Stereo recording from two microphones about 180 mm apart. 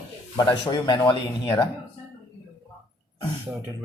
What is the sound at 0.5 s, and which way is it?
Speech, 25° left (ahead or behind).